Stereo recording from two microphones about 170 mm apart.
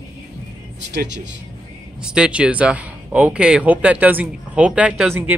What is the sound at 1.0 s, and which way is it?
Speech, 90° right.